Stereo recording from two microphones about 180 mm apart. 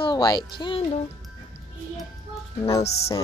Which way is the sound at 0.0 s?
20° left (ahead or behind).